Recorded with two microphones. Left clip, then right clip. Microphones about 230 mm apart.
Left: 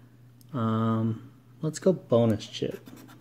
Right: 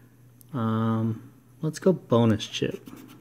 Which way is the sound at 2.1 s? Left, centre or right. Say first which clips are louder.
Right 1 dB; centre.